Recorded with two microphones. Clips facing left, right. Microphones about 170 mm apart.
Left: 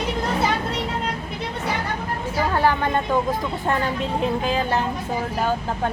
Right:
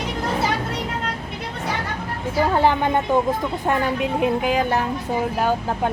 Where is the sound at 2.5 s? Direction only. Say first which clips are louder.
Right 1 dB; 20° right (ahead or behind).